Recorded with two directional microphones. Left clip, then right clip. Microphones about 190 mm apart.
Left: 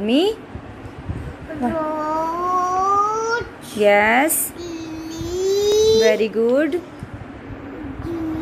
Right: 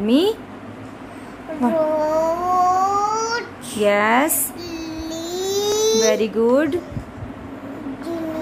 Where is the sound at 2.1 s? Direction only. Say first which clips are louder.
Right 2 dB; 25° right (ahead or behind).